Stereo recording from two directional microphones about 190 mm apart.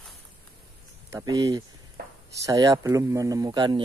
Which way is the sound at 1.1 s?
15° right (ahead or behind).